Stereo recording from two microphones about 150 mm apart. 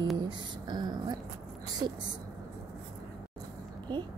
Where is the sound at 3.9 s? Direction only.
30° right (ahead or behind).